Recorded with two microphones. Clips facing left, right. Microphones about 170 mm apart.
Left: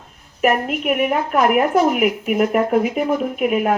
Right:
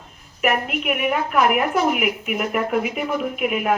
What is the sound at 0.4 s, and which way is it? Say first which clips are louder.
A woman's voice: left 4 dB; 40° left (ahead or behind).